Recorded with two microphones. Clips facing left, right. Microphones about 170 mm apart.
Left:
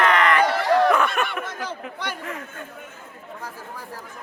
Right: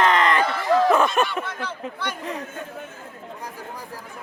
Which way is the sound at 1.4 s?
40° left (ahead or behind).